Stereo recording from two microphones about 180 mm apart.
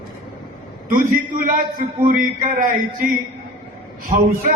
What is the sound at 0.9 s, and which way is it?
A man's voice, 45° right (ahead or behind).